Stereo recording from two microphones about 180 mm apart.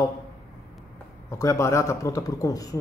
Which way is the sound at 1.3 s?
15° left (ahead or behind).